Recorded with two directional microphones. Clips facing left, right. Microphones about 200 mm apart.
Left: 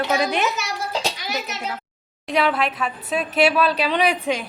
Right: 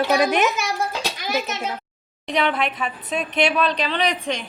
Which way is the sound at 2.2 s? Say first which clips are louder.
Left 1 dB; 5° left (ahead or behind).